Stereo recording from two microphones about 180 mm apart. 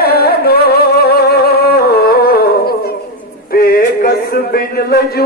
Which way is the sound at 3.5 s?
55° left (ahead or behind).